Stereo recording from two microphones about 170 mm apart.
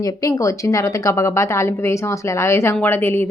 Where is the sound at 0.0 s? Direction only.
20° left (ahead or behind).